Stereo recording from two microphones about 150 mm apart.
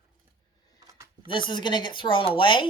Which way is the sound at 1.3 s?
30° left (ahead or behind).